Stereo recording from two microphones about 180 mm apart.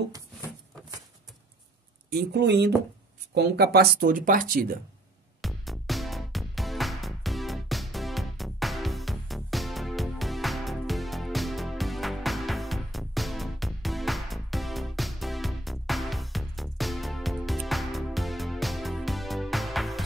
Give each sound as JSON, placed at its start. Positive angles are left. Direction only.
{"t": 2.1, "sound": "speech", "side_deg": -65}
{"t": 5.4, "sound": "music", "side_deg": 0}